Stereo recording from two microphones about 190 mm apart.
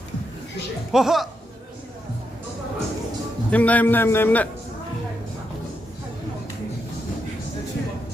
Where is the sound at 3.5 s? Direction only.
10° left (ahead or behind).